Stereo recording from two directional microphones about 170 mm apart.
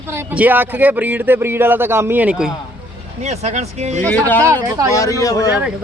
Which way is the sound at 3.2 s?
40° right (ahead or behind).